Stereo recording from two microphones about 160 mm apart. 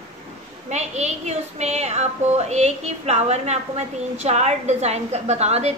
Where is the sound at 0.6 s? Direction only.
45° right (ahead or behind).